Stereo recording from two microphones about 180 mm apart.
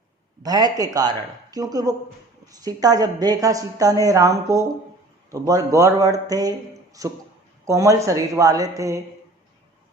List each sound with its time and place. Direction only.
0.4 s a woman's voice: 20° right (ahead or behind)